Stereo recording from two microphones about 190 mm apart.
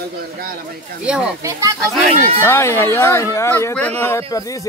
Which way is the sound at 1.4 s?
15° right (ahead or behind).